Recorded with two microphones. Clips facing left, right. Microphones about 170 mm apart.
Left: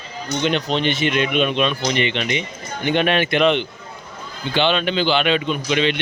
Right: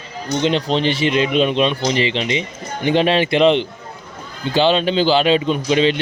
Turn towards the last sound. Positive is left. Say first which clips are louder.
# right 4 dB
turn(degrees=-35)  # may be behind; listen again after turning